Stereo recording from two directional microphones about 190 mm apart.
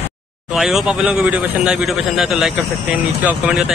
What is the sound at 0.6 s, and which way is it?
A man's voice, centre (ahead or behind).